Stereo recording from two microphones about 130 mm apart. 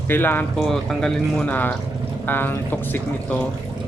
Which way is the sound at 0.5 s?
5° left (ahead or behind).